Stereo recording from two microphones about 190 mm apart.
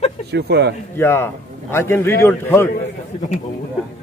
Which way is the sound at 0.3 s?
60° right (ahead or behind).